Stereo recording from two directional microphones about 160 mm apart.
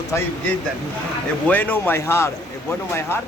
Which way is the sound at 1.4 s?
10° left (ahead or behind).